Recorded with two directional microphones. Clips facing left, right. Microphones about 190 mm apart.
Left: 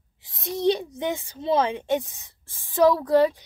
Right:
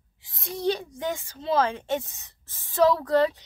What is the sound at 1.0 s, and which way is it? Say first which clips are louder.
A woman's voice: left 3 dB; 20° left (ahead or behind).